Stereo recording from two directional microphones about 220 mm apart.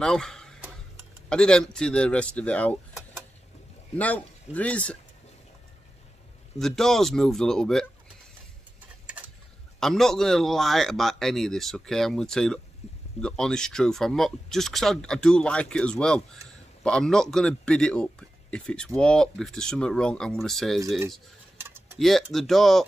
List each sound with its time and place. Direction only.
0.0 s a sound: 5° left (ahead or behind)
1.3 s speech: 5° left (ahead or behind)
6.6 s speech: centre (ahead or behind)
9.8 s speech: centre (ahead or behind)
12.8 s a sound: 30° left (ahead or behind)
13.2 s speech: 5° left (ahead or behind)
21.5 s typing: 10° right (ahead or behind)
21.9 s speech: centre (ahead or behind)